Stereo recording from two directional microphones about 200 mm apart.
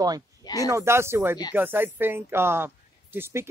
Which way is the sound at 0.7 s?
15° right (ahead or behind).